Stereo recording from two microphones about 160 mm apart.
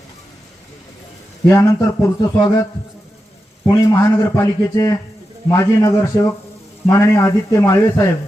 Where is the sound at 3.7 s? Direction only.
20° left (ahead or behind).